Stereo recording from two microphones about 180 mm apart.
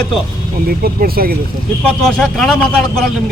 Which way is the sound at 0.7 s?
55° right (ahead or behind).